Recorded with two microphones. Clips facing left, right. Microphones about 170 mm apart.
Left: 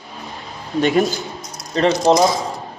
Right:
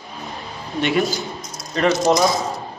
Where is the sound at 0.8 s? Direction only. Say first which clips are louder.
Left 4 dB; 40° left (ahead or behind).